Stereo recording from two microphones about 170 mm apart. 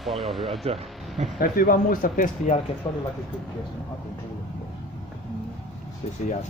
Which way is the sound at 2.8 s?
30° left (ahead or behind).